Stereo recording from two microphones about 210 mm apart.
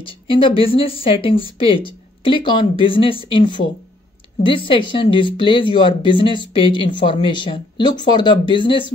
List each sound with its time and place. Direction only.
0.0 s speech: 25° left (ahead or behind)